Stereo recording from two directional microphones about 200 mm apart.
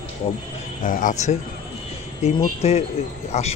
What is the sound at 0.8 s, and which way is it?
A man's voice, 40° left (ahead or behind).